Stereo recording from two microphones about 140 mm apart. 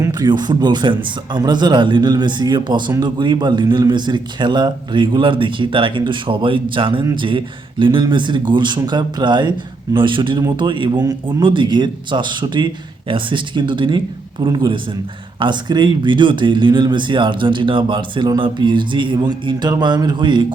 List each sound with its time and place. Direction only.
0.0 s speech: 30° right (ahead or behind)